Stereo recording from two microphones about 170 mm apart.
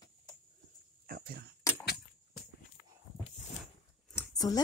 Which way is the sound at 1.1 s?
60° right (ahead or behind).